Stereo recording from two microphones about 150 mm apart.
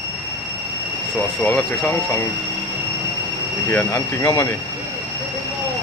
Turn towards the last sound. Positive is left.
turn(degrees=15)  # may be behind; listen again after turning